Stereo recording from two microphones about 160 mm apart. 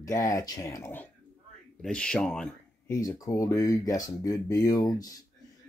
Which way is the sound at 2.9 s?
20° left (ahead or behind).